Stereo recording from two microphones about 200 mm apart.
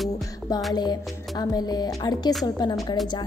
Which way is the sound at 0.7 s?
20° left (ahead or behind).